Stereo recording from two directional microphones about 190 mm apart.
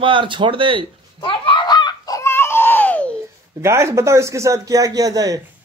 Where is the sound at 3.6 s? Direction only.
15° right (ahead or behind).